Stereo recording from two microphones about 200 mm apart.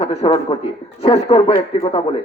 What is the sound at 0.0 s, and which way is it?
Speech, 30° left (ahead or behind).